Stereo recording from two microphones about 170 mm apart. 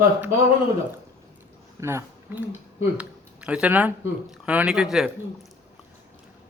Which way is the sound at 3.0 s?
5° right (ahead or behind).